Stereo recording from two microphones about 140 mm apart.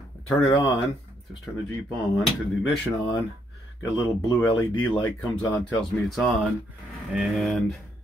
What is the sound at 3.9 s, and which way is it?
Speech, 30° left (ahead or behind).